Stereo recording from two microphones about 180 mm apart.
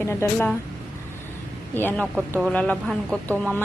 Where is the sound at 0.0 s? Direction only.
15° left (ahead or behind).